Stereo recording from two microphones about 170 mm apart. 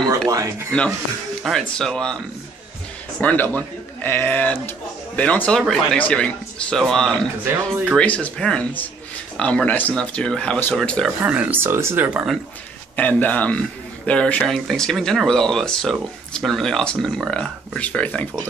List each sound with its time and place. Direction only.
0.3 s speech: 20° right (ahead or behind)
1.4 s speech: centre (ahead or behind)
3.2 s speech: 10° left (ahead or behind)
11.2 s speech: 10° right (ahead or behind)
12.9 s speech: 10° left (ahead or behind)